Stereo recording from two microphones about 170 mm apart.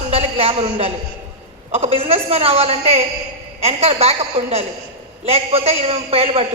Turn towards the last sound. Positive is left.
turn(degrees=-35)  # may be behind; listen again after turning